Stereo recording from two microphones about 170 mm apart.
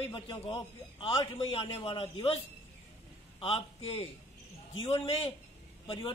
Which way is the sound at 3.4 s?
35° left (ahead or behind).